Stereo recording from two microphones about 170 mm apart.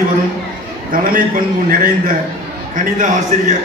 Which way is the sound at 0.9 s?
55° right (ahead or behind).